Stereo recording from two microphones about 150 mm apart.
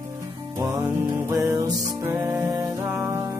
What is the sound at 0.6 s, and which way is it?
Music, 20° right (ahead or behind).